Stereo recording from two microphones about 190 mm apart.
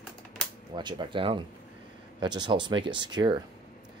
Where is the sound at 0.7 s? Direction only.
25° right (ahead or behind).